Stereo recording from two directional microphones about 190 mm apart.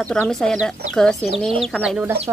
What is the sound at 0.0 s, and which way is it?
Speech, 5° left (ahead or behind).